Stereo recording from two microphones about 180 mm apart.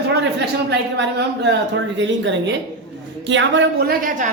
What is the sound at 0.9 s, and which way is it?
Speech, 70° right (ahead or behind).